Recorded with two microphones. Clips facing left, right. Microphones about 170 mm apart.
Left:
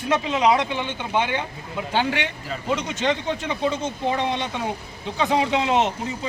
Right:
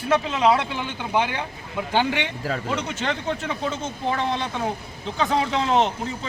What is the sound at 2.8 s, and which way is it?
Speech, 5° right (ahead or behind).